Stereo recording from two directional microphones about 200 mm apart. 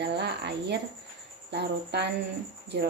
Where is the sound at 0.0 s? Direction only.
55° right (ahead or behind).